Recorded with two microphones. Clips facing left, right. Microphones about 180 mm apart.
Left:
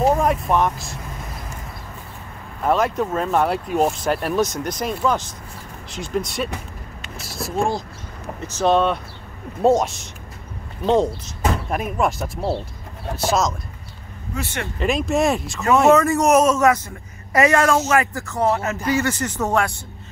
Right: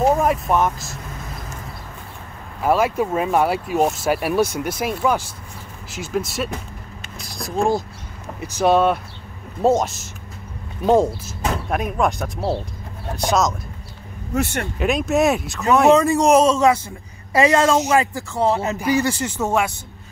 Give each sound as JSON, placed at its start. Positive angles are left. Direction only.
{"t": 0.0, "sound": "speech", "side_deg": -5}
{"t": 2.6, "sound": "speech", "side_deg": -5}
{"t": 14.3, "sound": "speech", "side_deg": -50}
{"t": 14.8, "sound": "speech", "side_deg": 0}
{"t": 15.9, "sound": "speech", "side_deg": -15}
{"t": 16.2, "sound": "a man's voice", "side_deg": -30}
{"t": 17.5, "sound": "speech", "side_deg": -20}
{"t": 19.1, "sound": "a man's voice", "side_deg": -25}